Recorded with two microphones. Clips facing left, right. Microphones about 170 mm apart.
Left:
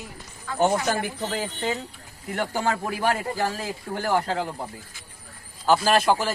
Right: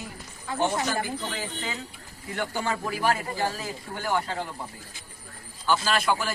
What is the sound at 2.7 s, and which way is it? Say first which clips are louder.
Speech: left 2 dB; 65° left (ahead or behind).